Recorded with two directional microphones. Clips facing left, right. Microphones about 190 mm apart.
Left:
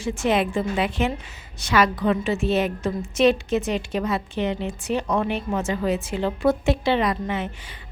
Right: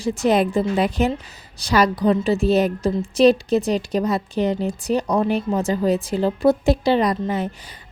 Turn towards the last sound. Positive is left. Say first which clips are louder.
# right 3 dB
turn(degrees=-40)  # may be behind; listen again after turning